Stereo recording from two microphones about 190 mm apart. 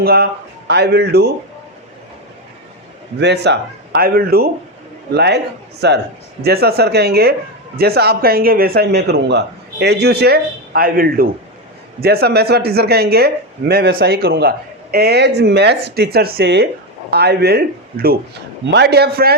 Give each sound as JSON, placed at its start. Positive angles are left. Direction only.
{"t": 0.0, "sound": "speech", "side_deg": -55}
{"t": 3.2, "sound": "speech", "side_deg": -60}